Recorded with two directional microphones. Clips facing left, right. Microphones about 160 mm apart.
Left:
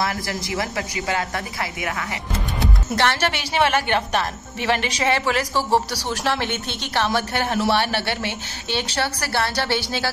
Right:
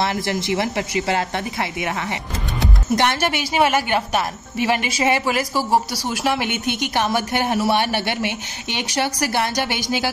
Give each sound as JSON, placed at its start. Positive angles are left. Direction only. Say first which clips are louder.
{"t": 0.0, "sound": "a woman's voice", "louder": "right 4 dB", "side_deg": -25}
{"t": 3.0, "sound": "speech", "louder": "left 1 dB", "side_deg": -15}